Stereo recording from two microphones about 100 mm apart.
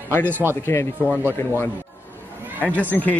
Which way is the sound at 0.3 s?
20° right (ahead or behind).